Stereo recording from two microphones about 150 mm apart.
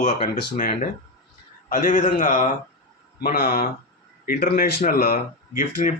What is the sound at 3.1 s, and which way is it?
Speech, 90° left.